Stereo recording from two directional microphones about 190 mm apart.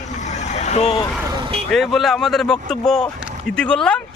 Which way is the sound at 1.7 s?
Centre (ahead or behind).